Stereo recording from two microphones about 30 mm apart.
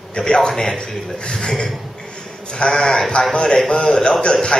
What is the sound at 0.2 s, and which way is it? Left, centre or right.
A man's voice, left.